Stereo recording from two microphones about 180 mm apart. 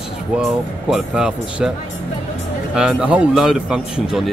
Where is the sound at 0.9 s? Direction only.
5° right (ahead or behind).